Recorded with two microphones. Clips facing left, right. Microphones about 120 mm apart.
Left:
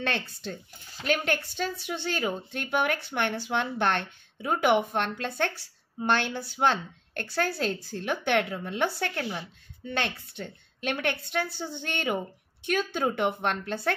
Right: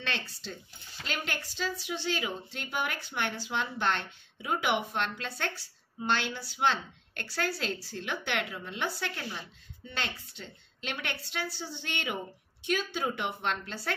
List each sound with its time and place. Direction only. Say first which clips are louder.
0.0 s a woman's voice: left 6 dB; 50° left (ahead or behind)